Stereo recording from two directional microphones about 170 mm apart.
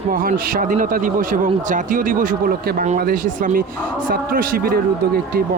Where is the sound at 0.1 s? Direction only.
55° right (ahead or behind).